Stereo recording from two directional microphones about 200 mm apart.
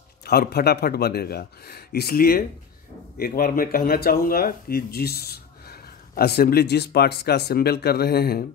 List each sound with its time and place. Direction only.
0.2 s speech: 50° left (ahead or behind)